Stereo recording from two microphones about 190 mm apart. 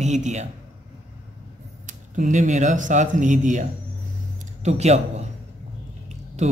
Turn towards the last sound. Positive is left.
turn(degrees=-35)  # may be behind; listen again after turning